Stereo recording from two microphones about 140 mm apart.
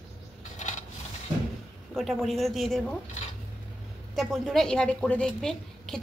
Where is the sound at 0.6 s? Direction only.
60° left (ahead or behind).